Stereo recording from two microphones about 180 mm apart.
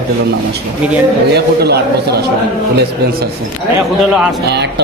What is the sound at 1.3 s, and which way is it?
Speech, 65° right (ahead or behind).